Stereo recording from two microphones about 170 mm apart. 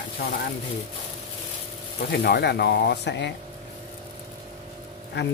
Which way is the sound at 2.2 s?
75° left (ahead or behind).